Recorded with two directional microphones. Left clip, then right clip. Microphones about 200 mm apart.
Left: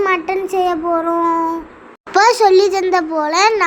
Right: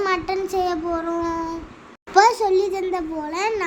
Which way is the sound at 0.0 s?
5° right (ahead or behind).